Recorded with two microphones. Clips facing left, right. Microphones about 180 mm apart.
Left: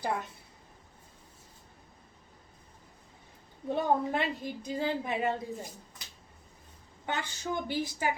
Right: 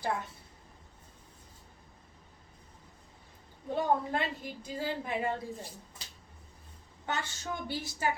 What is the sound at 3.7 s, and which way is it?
A woman's voice, 20° left (ahead or behind).